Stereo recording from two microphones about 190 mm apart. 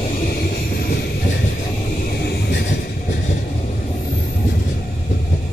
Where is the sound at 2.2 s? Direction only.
60° left (ahead or behind).